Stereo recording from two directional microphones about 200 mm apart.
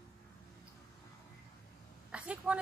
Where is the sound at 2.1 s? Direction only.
5° right (ahead or behind).